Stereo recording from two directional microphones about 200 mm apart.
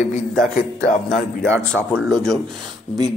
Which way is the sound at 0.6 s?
40° left (ahead or behind).